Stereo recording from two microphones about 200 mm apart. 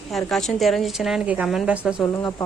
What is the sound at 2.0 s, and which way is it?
Speech, 10° left (ahead or behind).